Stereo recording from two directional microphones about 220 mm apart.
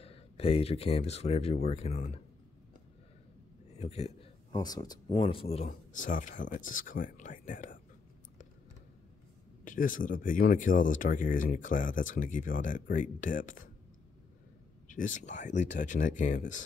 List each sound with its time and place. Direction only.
0.0 s speech: 25° left (ahead or behind)
3.7 s speech: 30° left (ahead or behind)
5.7 s speech: 35° left (ahead or behind)
9.7 s speech: 35° left (ahead or behind)
14.9 s speech: 35° left (ahead or behind)